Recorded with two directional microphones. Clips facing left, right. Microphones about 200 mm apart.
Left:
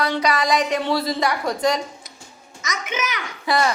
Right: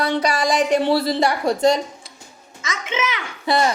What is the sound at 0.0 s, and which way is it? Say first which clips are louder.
Child singing: right 1 dB; 30° right (ahead or behind).